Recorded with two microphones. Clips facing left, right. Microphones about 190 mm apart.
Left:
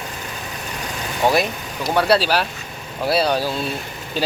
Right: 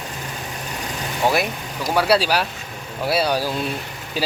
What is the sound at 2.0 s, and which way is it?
Speech, 10° right (ahead or behind).